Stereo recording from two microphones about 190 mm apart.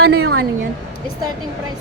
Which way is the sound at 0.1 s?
90° right.